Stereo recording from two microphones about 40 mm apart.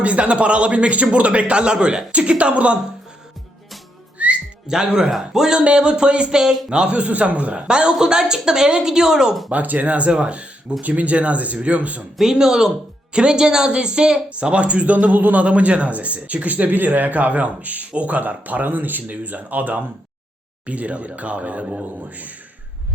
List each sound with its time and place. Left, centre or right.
0.0 s a man's voice: right
4.2 s whistling: right
4.7 s a man's voice: centre
5.5 s a man's voice: right
7.7 s a man's voice: right
9.5 s a man's voice: right
12.3 s a woman's voice: centre; by 19.8 s right
20.7 s a man's voice: right